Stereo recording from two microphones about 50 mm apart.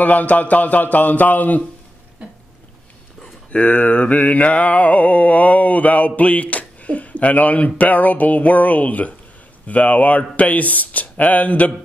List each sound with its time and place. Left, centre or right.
0.0 s speech: left
3.5 s mantra: left
9.7 s speech: left